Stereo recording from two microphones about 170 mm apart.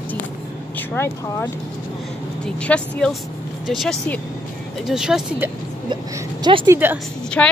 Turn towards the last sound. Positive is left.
turn(degrees=10)  # may be behind; listen again after turning